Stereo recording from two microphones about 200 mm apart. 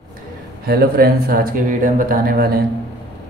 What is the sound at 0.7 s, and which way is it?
Speech, 50° right (ahead or behind).